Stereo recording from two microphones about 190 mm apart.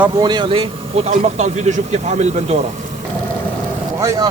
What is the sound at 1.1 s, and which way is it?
Speech, 35° right (ahead or behind).